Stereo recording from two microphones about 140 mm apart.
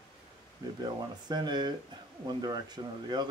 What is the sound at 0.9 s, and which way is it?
Speech, 30° right (ahead or behind).